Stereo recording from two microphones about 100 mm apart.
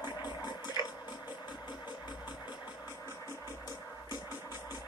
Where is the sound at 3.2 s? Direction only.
30° left (ahead or behind).